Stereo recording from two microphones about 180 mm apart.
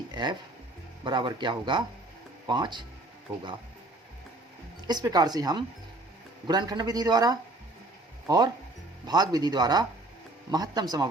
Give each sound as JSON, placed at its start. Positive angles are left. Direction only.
{"t": 0.1, "sound": "speech", "side_deg": -25}
{"t": 4.9, "sound": "speech", "side_deg": -20}